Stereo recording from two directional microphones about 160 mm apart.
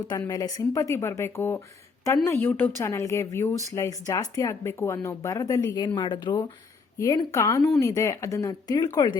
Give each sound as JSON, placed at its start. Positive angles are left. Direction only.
{"t": 0.1, "sound": "a woman's voice", "side_deg": 20}